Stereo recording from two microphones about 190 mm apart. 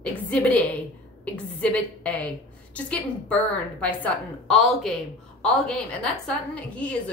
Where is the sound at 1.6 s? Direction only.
5° left (ahead or behind).